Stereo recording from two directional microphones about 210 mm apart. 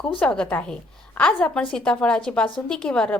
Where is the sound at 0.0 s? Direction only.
5° left (ahead or behind).